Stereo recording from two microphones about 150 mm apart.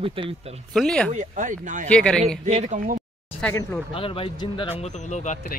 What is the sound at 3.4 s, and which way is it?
Speech, 10° left (ahead or behind).